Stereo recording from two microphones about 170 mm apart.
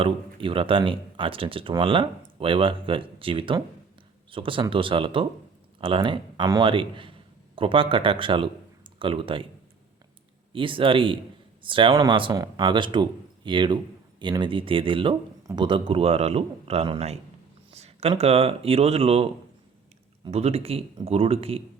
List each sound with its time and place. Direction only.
0.0 s speech: 30° right (ahead or behind)
10.5 s speech: 30° right (ahead or behind)